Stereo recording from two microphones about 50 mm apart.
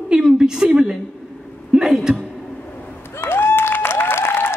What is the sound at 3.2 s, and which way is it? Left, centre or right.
Applause, left.